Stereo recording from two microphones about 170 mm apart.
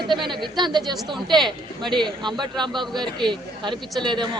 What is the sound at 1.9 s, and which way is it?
A man's voice, 25° right (ahead or behind).